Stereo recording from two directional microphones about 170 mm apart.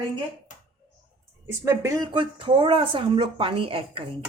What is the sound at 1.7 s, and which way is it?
Speech, 20° right (ahead or behind).